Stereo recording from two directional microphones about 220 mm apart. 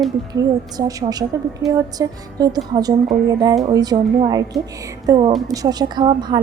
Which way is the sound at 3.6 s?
15° right (ahead or behind).